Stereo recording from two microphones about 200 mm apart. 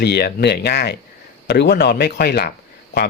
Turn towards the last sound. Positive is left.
turn(degrees=50)  # may be behind; listen again after turning